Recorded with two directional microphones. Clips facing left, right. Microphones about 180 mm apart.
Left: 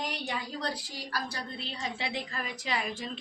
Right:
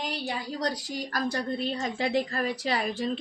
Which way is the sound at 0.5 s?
40° right (ahead or behind).